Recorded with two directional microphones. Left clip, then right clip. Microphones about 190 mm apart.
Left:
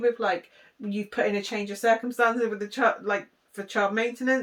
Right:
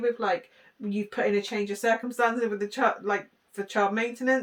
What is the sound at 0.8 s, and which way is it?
Speech, 20° right (ahead or behind).